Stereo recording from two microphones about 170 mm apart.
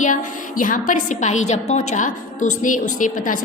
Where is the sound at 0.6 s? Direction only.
50° left (ahead or behind).